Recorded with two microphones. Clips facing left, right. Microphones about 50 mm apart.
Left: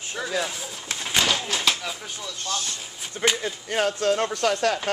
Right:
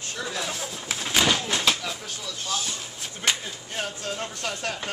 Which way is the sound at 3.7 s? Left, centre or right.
Left.